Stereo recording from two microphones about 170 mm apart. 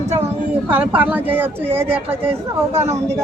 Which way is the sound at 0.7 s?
10° right (ahead or behind).